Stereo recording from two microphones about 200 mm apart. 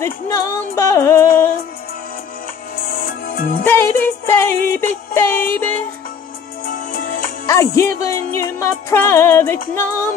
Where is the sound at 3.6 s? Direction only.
10° left (ahead or behind).